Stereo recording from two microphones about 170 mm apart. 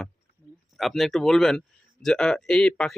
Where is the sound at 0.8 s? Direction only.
Centre (ahead or behind).